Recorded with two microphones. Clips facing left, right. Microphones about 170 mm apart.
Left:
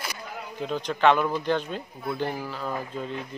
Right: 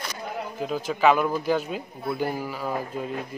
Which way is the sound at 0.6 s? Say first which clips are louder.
Even; 5° right (ahead or behind).